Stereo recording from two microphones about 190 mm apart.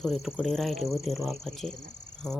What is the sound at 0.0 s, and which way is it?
A woman's voice, centre (ahead or behind).